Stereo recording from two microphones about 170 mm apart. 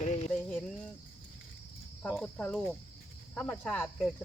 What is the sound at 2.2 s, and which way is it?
Cricket, 5° left (ahead or behind).